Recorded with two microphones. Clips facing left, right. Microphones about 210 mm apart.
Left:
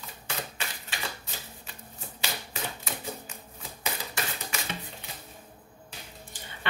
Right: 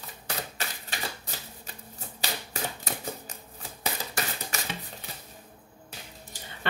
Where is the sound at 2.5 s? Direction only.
40° right (ahead or behind).